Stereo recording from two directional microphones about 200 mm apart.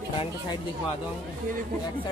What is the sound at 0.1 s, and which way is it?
Speech, 25° left (ahead or behind).